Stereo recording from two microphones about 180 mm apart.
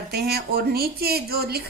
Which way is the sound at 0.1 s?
60° right (ahead or behind).